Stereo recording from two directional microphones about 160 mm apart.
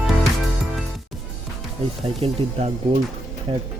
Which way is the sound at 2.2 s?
40° right (ahead or behind).